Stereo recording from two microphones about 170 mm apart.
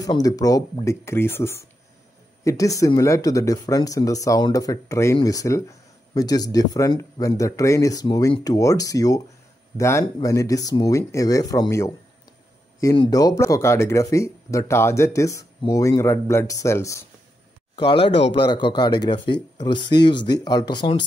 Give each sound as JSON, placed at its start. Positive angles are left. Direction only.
{"t": 0.0, "sound": "speech", "side_deg": 20}
{"t": 12.9, "sound": "speech", "side_deg": 25}
{"t": 18.3, "sound": "speech", "side_deg": 30}